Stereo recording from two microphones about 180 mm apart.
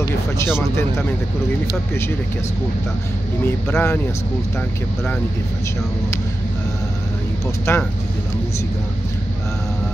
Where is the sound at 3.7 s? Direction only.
10° left (ahead or behind).